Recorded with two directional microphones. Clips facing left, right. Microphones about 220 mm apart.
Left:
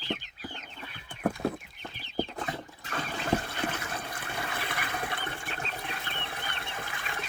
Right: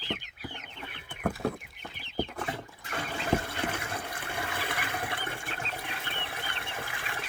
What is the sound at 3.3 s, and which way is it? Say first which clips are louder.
Water: even; 25° right (ahead or behind).